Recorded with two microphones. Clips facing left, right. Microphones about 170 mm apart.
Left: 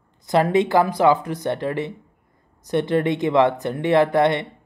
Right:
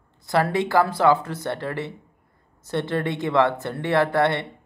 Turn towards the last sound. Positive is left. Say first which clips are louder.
# left 3 dB
turn(degrees=15)  # may be behind; listen again after turning